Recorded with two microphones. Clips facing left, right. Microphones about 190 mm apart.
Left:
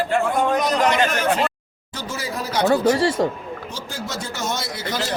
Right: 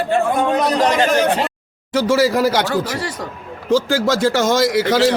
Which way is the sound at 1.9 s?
90° right.